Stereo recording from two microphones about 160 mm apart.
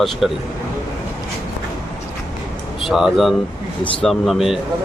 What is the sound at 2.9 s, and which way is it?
Speech, centre (ahead or behind).